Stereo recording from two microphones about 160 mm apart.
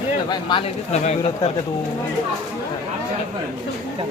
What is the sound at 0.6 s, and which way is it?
Speech, 40° left (ahead or behind).